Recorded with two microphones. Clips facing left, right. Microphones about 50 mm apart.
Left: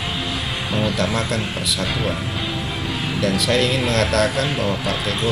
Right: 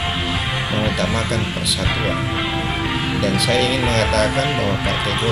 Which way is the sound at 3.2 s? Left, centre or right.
Centre.